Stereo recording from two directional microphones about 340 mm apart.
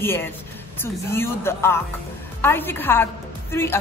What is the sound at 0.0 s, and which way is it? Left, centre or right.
Speech, centre.